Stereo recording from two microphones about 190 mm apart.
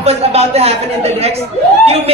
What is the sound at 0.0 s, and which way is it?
A woman's voice, 30° right (ahead or behind).